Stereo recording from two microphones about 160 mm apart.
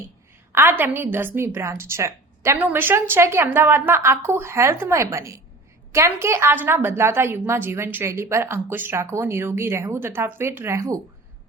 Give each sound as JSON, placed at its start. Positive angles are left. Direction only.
{"t": 0.5, "sound": "a woman's voice", "side_deg": -15}